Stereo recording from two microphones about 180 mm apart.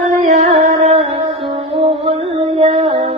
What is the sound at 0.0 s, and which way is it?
Music, 40° right (ahead or behind).